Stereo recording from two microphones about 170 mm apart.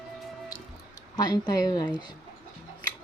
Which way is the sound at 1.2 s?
25° left (ahead or behind).